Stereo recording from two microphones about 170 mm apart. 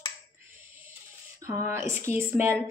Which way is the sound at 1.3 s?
20° right (ahead or behind).